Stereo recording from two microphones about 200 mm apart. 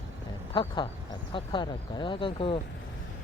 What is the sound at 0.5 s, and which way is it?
Speech, 25° left (ahead or behind).